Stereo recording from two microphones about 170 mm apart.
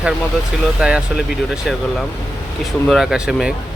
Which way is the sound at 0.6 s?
5° right (ahead or behind).